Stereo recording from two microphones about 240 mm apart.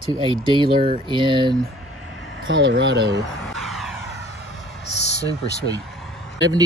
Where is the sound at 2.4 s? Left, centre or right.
Right.